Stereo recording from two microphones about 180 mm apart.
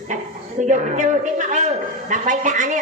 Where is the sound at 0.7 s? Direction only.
40° right (ahead or behind).